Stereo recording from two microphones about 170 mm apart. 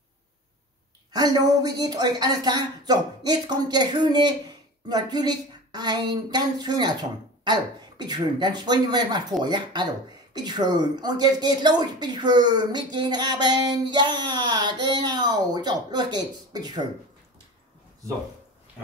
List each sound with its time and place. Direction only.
1.1 s speech: 25° right (ahead or behind)